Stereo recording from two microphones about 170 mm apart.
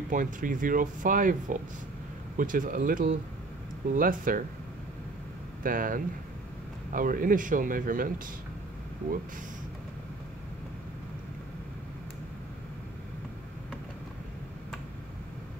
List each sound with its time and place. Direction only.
0.1 s speech: 50° right (ahead or behind)
5.6 s speech: 55° right (ahead or behind)